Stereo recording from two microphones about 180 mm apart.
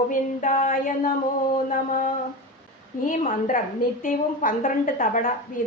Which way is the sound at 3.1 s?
45° left (ahead or behind).